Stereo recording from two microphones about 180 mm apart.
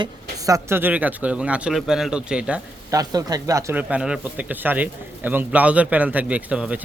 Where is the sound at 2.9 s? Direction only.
20° right (ahead or behind).